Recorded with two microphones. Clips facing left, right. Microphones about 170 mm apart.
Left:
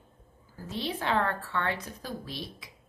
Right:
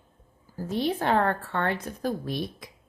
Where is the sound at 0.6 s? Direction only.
50° right (ahead or behind).